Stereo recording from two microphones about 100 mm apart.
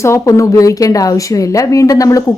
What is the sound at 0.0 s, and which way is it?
Speech, 30° left (ahead or behind).